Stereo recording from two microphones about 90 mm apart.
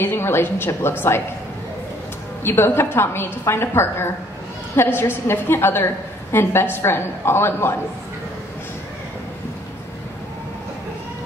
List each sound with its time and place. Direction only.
0.0 s a woman's voice: 25° left (ahead or behind)
2.4 s a woman's voice: 25° left (ahead or behind)